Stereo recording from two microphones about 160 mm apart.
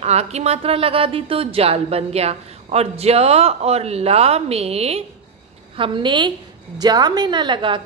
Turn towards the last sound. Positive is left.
turn(degrees=-30)  # may be behind; listen again after turning